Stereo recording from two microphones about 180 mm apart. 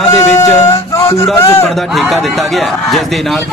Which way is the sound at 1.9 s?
Centre (ahead or behind).